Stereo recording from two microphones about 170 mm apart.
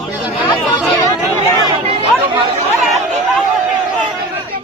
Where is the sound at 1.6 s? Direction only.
35° right (ahead or behind).